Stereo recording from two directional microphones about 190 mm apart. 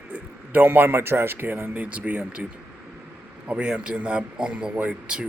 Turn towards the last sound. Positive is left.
turn(degrees=-5)  # may be behind; listen again after turning